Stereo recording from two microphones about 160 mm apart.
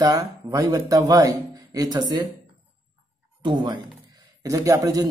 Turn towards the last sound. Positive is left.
turn(degrees=-20)  # may be behind; listen again after turning